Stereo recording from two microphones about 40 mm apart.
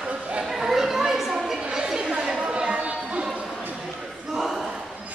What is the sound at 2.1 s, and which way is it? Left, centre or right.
Chatter, centre.